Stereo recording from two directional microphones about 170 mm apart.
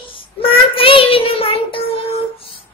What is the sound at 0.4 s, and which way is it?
Child singing, 30° left (ahead or behind).